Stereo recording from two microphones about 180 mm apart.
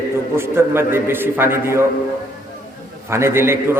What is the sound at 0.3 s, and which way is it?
A man's voice, 15° right (ahead or behind).